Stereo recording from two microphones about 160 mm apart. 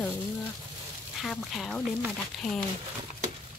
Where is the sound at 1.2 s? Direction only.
Centre (ahead or behind).